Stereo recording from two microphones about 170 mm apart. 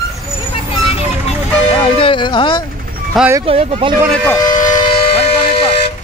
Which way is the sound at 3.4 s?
35° right (ahead or behind).